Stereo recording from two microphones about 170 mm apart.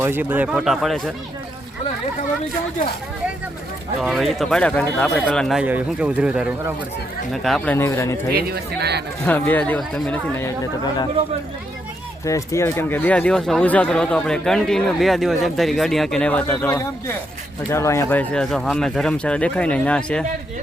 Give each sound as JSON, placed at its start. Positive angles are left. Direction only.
{"t": 0.0, "sound": "speech", "side_deg": -10}
{"t": 4.0, "sound": "speech", "side_deg": 0}
{"t": 7.4, "sound": "speech", "side_deg": 5}
{"t": 8.4, "sound": "speech", "side_deg": -65}
{"t": 9.2, "sound": "speech", "side_deg": 10}
{"t": 12.2, "sound": "speech", "side_deg": 20}